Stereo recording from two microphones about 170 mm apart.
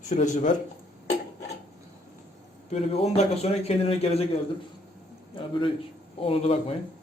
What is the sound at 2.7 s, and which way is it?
A man's voice, 40° left (ahead or behind).